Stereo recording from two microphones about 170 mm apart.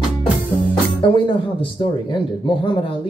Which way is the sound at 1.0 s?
30° left (ahead or behind).